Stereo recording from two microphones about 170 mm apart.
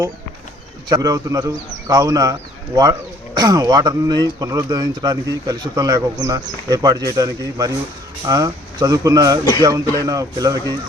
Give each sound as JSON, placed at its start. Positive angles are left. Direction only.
{"t": 0.9, "sound": "speech", "side_deg": -20}